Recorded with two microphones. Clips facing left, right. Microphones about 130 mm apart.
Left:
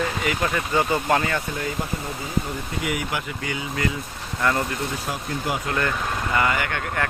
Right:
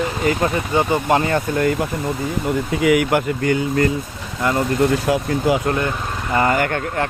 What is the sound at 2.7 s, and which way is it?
Speech, 90° right.